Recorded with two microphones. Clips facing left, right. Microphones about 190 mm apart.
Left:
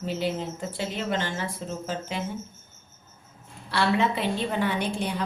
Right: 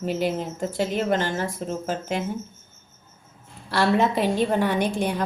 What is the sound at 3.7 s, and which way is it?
Speech, 40° right (ahead or behind).